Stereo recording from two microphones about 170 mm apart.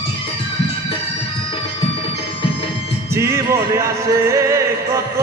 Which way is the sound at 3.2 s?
15° right (ahead or behind).